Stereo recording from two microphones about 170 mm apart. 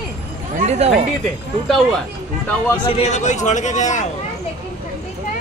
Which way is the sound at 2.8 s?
35° left (ahead or behind).